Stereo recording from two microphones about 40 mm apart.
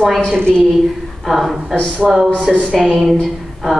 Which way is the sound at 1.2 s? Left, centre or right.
Centre.